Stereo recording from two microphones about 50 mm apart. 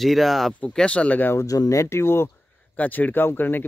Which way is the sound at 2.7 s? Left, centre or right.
Left.